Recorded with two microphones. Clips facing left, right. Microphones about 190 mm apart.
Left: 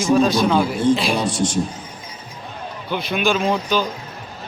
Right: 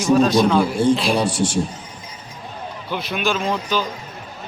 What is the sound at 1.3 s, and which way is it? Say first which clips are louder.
Speech: even; 30° right (ahead or behind).